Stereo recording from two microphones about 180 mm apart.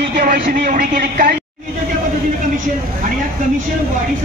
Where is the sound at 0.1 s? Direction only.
50° right (ahead or behind).